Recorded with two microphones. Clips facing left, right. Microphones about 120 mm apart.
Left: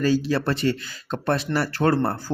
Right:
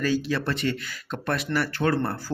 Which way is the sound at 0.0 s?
35° left (ahead or behind).